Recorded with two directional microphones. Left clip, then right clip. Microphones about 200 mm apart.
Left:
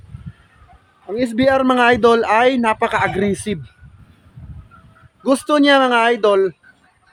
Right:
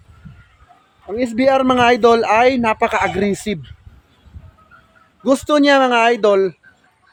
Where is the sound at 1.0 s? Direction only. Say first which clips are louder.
Right 1 dB; centre (ahead or behind).